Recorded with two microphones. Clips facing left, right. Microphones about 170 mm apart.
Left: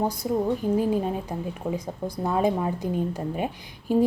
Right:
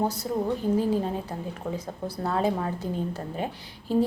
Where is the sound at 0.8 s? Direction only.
15° left (ahead or behind).